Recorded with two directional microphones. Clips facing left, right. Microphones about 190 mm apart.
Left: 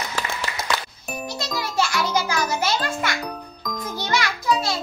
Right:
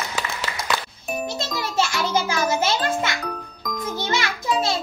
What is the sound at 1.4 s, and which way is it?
Music, 25° right (ahead or behind).